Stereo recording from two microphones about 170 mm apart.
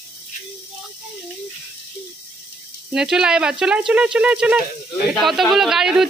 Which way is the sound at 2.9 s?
5° right (ahead or behind).